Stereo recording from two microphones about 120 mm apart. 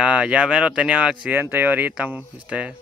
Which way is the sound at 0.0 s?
10° right (ahead or behind).